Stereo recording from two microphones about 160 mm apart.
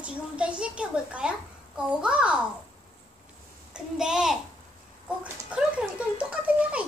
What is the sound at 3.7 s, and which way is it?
Speech, 5° right (ahead or behind).